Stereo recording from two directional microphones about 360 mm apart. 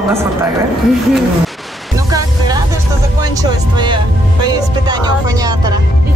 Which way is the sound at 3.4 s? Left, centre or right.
Centre.